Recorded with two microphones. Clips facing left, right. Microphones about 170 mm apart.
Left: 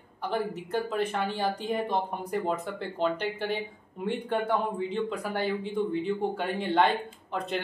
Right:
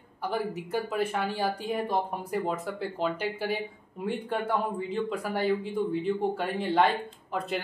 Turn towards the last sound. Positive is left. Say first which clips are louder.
# even
turn(degrees=-5)  # may be behind; listen again after turning